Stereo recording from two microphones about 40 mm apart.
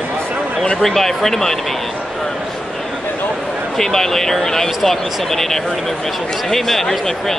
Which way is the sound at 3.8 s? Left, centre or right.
Centre.